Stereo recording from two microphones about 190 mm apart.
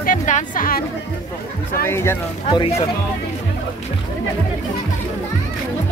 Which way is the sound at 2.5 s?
30° left (ahead or behind).